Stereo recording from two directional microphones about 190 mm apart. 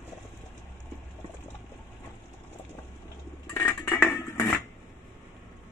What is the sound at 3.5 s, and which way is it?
Music, 10° left (ahead or behind).